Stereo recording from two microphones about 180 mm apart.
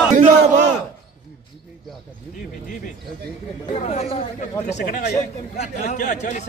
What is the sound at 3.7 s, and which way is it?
A man's voice, 35° left (ahead or behind).